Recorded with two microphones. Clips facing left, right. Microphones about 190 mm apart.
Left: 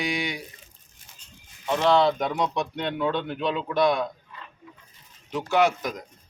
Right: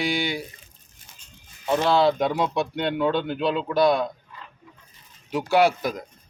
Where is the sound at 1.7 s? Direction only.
5° right (ahead or behind).